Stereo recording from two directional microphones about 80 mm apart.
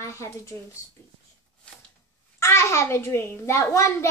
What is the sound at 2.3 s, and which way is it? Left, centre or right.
A child's voice, left.